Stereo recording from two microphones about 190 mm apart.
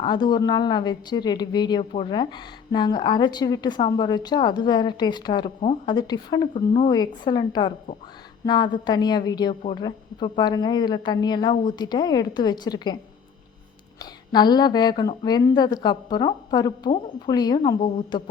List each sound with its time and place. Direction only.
0.0 s a woman's voice: 25° left (ahead or behind)
14.0 s a woman's voice: 20° left (ahead or behind)